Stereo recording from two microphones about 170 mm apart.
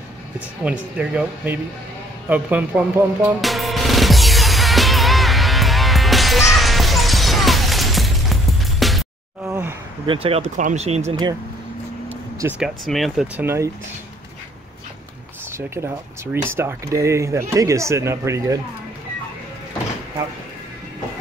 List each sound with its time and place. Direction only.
0.7 s speech: 5° right (ahead or behind)
2.2 s music: 10° right (ahead or behind)
9.5 s a sound: 10° right (ahead or behind)
10.0 s speech: 35° right (ahead or behind)
12.1 s speech: 10° right (ahead or behind)
13.4 s speech: 15° right (ahead or behind)
15.5 s speech: 15° right (ahead or behind)